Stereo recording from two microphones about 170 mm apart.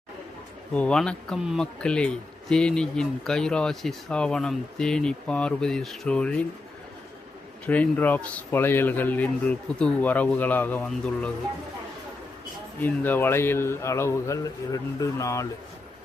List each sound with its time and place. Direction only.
0.7 s speech: 5° left (ahead or behind)
7.7 s a man's voice: 10° left (ahead or behind)
12.8 s a man's voice: 10° left (ahead or behind)